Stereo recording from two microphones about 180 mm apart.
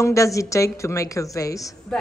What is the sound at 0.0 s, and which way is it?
A woman's voice, 15° left (ahead or behind).